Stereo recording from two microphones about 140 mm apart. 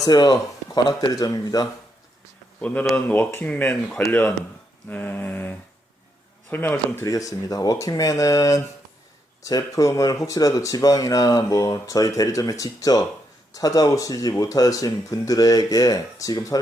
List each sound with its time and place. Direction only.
0.0 s speech: 30° left (ahead or behind)
2.6 s speech: 10° left (ahead or behind)